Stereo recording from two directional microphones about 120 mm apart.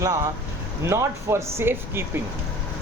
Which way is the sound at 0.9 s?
20° right (ahead or behind).